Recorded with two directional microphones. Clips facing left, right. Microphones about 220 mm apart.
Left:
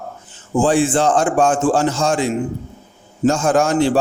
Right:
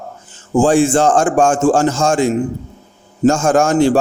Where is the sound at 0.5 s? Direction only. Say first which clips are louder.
Right 4 dB; 45° right (ahead or behind).